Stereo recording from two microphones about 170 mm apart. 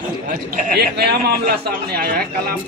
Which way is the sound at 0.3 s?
50° right (ahead or behind).